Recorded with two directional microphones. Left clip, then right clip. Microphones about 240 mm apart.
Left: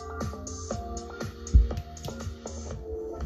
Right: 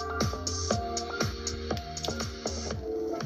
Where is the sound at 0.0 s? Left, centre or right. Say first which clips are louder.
Right 5 dB; right.